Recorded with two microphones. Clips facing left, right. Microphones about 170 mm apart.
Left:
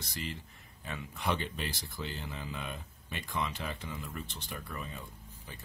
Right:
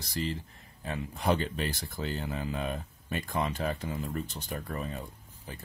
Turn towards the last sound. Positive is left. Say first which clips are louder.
# right 6 dB
turn(degrees=-45)  # may be behind; listen again after turning